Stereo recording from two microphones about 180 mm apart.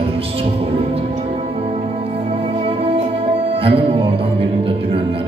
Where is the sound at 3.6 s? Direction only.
30° right (ahead or behind).